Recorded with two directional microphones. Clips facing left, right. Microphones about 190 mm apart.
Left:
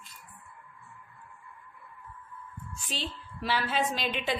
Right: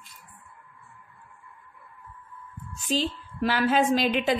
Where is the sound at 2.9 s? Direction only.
50° right (ahead or behind).